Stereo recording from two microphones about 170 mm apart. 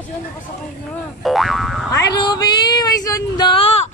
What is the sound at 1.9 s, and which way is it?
Female singing, 25° left (ahead or behind).